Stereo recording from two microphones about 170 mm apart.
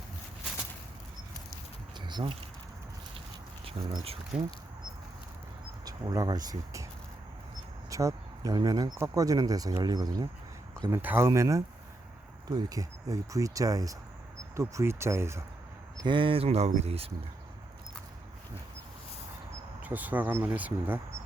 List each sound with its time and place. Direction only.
2.0 s a sound: 25° right (ahead or behind)
3.7 s speech: 35° right (ahead or behind)
5.8 s speech: 20° right (ahead or behind)
7.9 s speech: 20° right (ahead or behind)
16.0 s speech: 30° right (ahead or behind)
19.8 s speech: 10° right (ahead or behind)